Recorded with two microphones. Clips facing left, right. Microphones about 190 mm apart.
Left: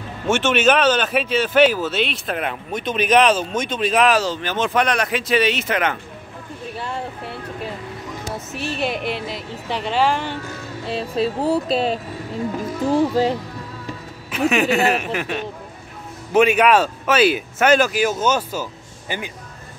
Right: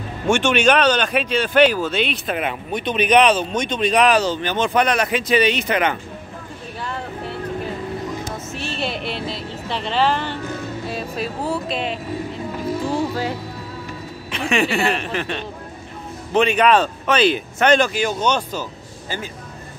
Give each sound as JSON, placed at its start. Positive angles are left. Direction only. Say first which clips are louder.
{"t": 0.3, "sound": "speech", "louder": "right 1 dB", "side_deg": 0}
{"t": 8.5, "sound": "a sound", "louder": "left 3 dB", "side_deg": 10}
{"t": 10.9, "sound": "speech", "louder": "left 8 dB", "side_deg": 30}
{"t": 13.1, "sound": "speech", "louder": "left 6 dB", "side_deg": 25}
{"t": 14.3, "sound": "speech", "louder": "left 3 dB", "side_deg": 5}